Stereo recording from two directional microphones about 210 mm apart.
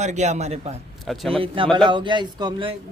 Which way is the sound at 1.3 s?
25° right (ahead or behind).